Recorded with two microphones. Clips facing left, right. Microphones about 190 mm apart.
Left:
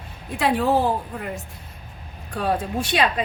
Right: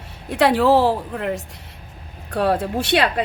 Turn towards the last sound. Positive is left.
turn(degrees=-65)  # may be behind; listen again after turning